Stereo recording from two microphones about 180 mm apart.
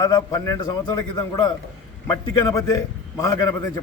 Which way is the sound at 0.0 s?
20° left (ahead or behind).